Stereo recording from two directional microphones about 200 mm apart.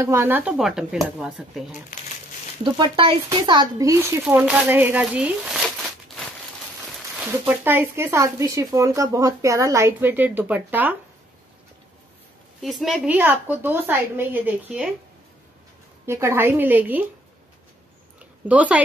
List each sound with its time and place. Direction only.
0.0 s speech: 15° right (ahead or behind)
2.6 s speech: 25° right (ahead or behind); by 5.7 s 5° right (ahead or behind)
7.2 s speech: 10° right (ahead or behind)
12.6 s speech: centre (ahead or behind)
16.1 s speech: 15° right (ahead or behind)
18.2 s a sound: 5° right (ahead or behind)